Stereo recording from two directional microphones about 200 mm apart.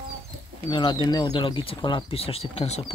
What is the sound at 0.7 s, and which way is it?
Speech, 20° left (ahead or behind).